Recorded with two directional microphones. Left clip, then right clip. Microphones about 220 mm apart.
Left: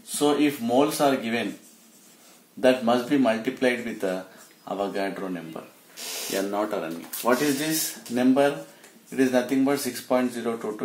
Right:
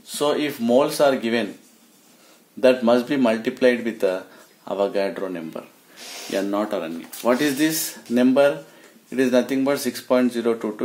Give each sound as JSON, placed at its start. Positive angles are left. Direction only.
{"t": 0.2, "sound": "speech", "side_deg": -50}
{"t": 2.6, "sound": "speech", "side_deg": -50}
{"t": 6.3, "sound": "speech", "side_deg": -35}